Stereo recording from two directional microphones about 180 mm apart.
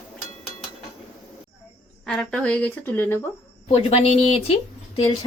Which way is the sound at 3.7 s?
35° left (ahead or behind).